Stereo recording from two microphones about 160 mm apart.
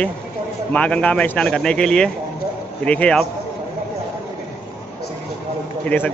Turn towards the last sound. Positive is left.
turn(degrees=10)  # may be behind; listen again after turning